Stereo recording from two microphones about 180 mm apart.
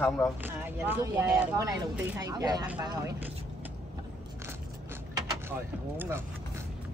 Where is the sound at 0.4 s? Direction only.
10° right (ahead or behind).